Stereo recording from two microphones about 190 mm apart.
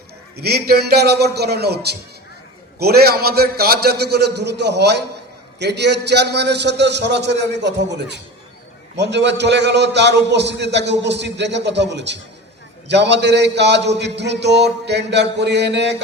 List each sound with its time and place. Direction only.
0.4 s a man's voice: 55° right (ahead or behind)